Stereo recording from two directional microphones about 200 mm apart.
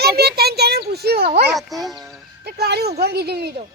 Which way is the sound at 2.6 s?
55° right (ahead or behind).